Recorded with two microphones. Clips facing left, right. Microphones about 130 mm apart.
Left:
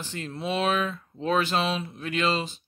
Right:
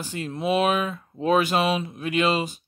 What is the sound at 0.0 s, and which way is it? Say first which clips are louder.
Speech: right 5 dB; 10° right (ahead or behind).